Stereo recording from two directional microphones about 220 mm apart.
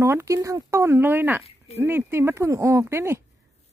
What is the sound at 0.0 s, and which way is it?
Speech, 15° right (ahead or behind).